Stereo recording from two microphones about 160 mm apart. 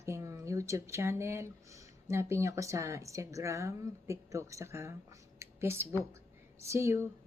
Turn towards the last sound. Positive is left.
turn(degrees=-15)  # may be behind; listen again after turning